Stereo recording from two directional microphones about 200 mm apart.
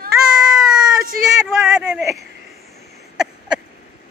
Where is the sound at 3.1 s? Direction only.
5° right (ahead or behind).